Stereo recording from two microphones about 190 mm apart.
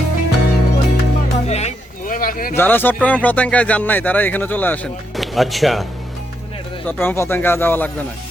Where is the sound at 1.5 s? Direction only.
35° left (ahead or behind).